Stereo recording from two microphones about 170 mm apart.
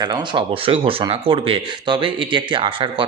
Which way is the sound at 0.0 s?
25° right (ahead or behind).